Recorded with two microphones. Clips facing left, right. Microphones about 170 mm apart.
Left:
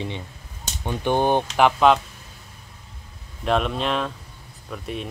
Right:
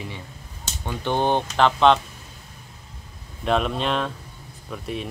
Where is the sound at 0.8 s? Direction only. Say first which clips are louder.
Left 2 dB; 15° left (ahead or behind).